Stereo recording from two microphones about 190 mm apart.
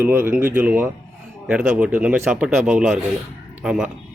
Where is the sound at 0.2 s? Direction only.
45° right (ahead or behind).